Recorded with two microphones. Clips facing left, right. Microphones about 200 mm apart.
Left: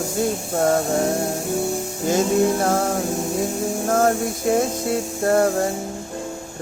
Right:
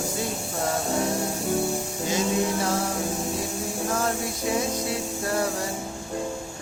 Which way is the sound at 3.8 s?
50° left (ahead or behind).